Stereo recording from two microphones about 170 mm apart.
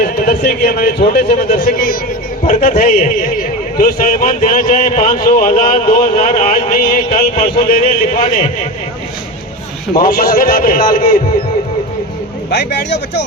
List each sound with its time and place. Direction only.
0.0 s a man's voice: 60° left (ahead or behind)
9.9 s speech: 60° left (ahead or behind)
12.5 s a man's voice: 90° left